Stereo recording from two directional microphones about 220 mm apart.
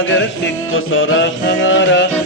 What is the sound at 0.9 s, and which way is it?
Music, 55° left (ahead or behind).